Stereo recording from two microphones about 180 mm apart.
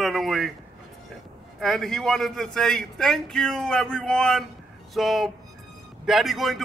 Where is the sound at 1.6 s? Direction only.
Centre (ahead or behind).